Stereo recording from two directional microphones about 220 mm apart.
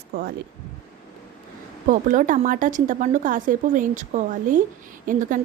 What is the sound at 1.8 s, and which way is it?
A woman's voice, 35° right (ahead or behind).